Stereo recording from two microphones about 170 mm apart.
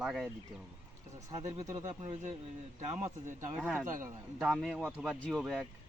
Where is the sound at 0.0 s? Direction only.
Centre (ahead or behind).